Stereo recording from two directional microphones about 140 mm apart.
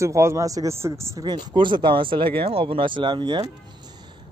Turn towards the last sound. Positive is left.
turn(degrees=-30)  # may be behind; listen again after turning